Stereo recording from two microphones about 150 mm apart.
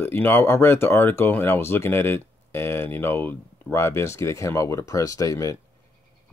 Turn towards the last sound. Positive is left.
turn(degrees=20)  # may be behind; listen again after turning